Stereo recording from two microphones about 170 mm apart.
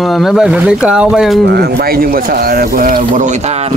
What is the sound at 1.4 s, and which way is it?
Speech, 70° right (ahead or behind).